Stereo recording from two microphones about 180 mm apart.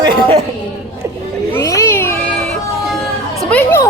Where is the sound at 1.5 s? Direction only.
15° left (ahead or behind).